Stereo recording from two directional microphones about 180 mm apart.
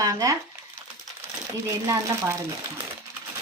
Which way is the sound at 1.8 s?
15° right (ahead or behind).